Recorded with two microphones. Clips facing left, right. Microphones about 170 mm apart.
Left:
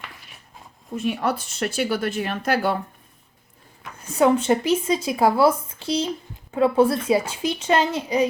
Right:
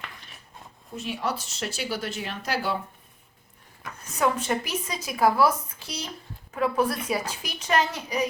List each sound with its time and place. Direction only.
0.9 s speech: 55° left (ahead or behind)
4.0 s speech: 30° left (ahead or behind)